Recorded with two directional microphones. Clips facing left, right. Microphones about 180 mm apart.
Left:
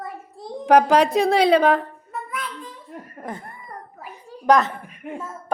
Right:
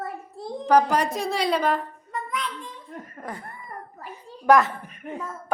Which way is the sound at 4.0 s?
10° left (ahead or behind).